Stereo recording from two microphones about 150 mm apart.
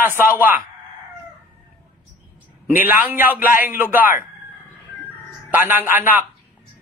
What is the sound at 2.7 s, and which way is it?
Speech, 15° right (ahead or behind).